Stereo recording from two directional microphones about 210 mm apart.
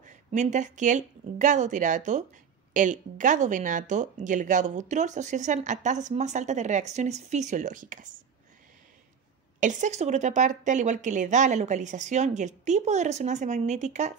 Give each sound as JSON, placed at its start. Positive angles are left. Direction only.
{"t": 0.0, "sound": "speech", "side_deg": -35}
{"t": 9.6, "sound": "speech", "side_deg": -35}